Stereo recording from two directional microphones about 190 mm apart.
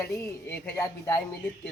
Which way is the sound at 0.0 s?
15° left (ahead or behind).